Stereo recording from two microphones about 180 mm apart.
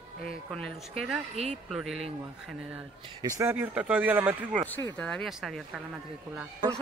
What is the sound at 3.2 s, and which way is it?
Speech, 20° right (ahead or behind).